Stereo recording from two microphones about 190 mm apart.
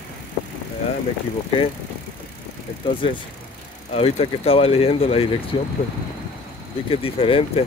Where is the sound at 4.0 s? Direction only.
30° left (ahead or behind).